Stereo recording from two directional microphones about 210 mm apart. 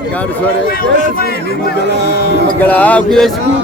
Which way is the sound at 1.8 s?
55° right (ahead or behind).